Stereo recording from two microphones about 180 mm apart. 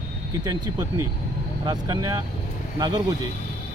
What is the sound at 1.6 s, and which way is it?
Speech, 20° right (ahead or behind).